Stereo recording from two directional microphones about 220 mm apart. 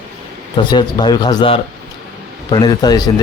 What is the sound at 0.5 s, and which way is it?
Speech, 20° left (ahead or behind).